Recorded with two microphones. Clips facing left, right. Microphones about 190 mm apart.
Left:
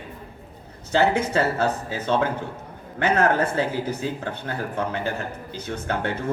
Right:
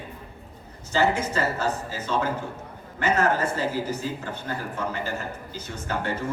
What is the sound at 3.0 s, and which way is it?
Speech, 55° left (ahead or behind).